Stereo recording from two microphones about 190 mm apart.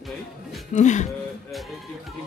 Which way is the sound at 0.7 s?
40° left (ahead or behind).